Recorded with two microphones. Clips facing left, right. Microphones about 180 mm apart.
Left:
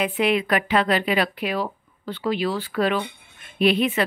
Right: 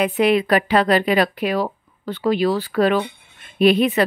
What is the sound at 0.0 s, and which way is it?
A woman's voice, 40° right (ahead or behind).